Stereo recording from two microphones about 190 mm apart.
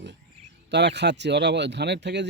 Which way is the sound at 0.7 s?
65° right (ahead or behind).